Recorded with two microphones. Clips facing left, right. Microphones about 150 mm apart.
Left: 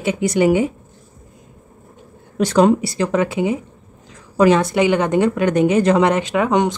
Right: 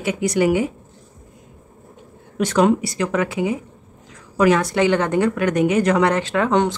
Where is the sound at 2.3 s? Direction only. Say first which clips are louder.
Left 3 dB; 35° left (ahead or behind).